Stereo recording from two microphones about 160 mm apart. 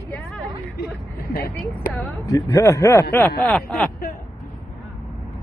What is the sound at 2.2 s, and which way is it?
A man's voice, 20° left (ahead or behind).